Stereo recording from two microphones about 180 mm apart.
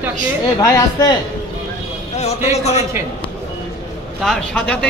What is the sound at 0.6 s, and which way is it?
Speech, 15° left (ahead or behind).